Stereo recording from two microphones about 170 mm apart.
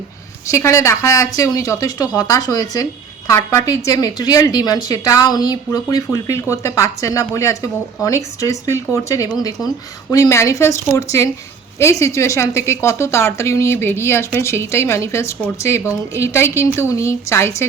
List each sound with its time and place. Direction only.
0.5 s a woman's voice: 15° left (ahead or behind)